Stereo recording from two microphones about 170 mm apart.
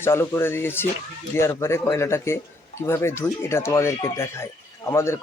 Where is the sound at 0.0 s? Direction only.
15° left (ahead or behind).